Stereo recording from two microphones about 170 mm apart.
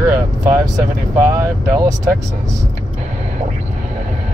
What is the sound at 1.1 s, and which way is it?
Speech, 15° right (ahead or behind).